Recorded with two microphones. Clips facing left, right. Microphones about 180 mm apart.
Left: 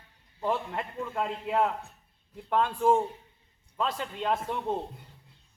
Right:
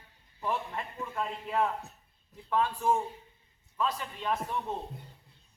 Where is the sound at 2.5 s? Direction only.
55° left (ahead or behind).